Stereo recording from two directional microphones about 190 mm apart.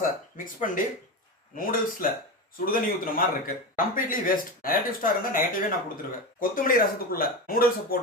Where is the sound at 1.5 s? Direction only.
50° left (ahead or behind).